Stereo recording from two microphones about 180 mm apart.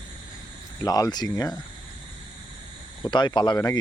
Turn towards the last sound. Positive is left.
turn(degrees=25)  # may be behind; listen again after turning